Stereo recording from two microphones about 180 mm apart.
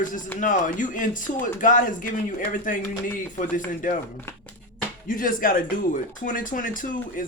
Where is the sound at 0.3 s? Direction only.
45° left (ahead or behind).